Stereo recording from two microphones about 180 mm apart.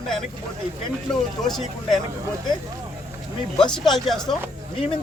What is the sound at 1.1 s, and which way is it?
Speech, centre (ahead or behind).